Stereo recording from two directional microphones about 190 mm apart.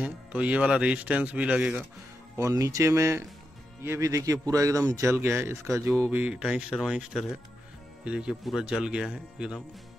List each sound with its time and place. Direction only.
0.0 s speech: 5° right (ahead or behind)